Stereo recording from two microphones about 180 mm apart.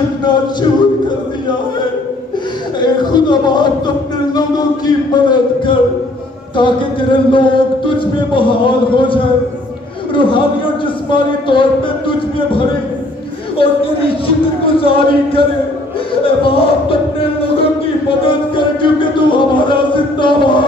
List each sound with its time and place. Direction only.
0.2 s music: 25° left (ahead or behind)
3.1 s a sound: 25° left (ahead or behind)
5.1 s speech: 25° left (ahead or behind)
13.6 s a man's voice: 30° left (ahead or behind)
16.3 s music: 30° left (ahead or behind)
20.2 s speech: 25° left (ahead or behind)